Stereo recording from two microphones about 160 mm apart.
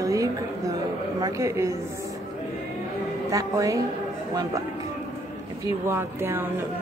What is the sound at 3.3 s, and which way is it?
Speech, 20° right (ahead or behind).